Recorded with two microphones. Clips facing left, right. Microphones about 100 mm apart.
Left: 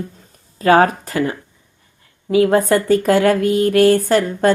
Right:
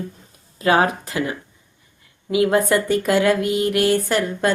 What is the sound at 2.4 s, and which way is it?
A woman's voice, 35° left (ahead or behind).